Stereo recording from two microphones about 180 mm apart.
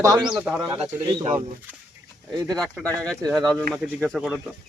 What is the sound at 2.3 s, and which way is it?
Speech, 20° right (ahead or behind).